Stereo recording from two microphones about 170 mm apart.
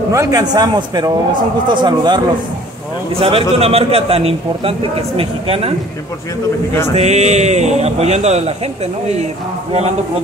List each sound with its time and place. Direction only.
0.1 s a man's voice: 20° right (ahead or behind)
7.0 s a man's voice: 40° right (ahead or behind)